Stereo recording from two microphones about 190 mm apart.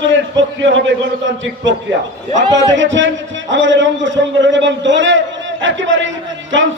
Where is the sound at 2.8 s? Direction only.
75° right (ahead or behind).